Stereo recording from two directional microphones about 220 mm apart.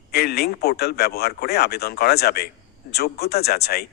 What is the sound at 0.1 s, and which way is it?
A man's voice, 45° left (ahead or behind).